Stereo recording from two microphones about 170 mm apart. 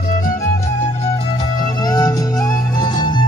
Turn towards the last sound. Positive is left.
turn(degrees=25)  # may be behind; listen again after turning